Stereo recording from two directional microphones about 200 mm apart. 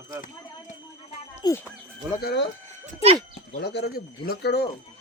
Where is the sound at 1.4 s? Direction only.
10° left (ahead or behind).